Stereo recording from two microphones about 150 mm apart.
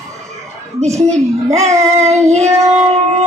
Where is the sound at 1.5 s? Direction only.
50° right (ahead or behind).